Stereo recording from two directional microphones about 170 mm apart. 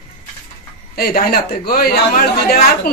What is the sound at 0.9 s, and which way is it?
A woman's voice, 65° left (ahead or behind).